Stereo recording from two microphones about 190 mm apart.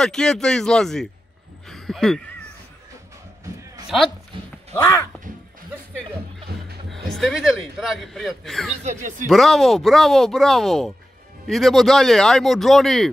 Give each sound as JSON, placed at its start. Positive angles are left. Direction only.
{"t": 0.0, "sound": "speech", "side_deg": 5}
{"t": 1.7, "sound": "a sound", "side_deg": 0}
{"t": 4.7, "sound": "speech", "side_deg": 15}
{"t": 6.5, "sound": "speech", "side_deg": -55}
{"t": 7.2, "sound": "speech", "side_deg": 0}
{"t": 8.8, "sound": "speech", "side_deg": -40}
{"t": 9.3, "sound": "speech", "side_deg": 0}